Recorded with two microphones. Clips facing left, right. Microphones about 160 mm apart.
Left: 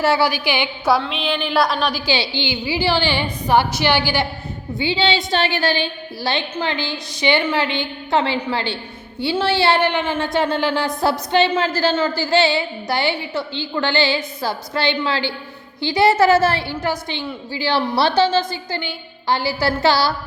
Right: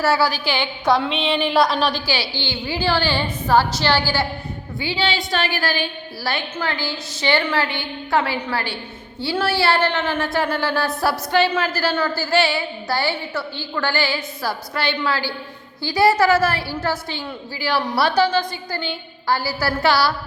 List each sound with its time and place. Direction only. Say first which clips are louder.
0.0 s a woman's voice: left 1 dB; 15° left (ahead or behind)
0.9 s a woman's voice: right 1 dB; centre (ahead or behind)
2.0 s a woman's voice: left 3 dB; 20° left (ahead or behind)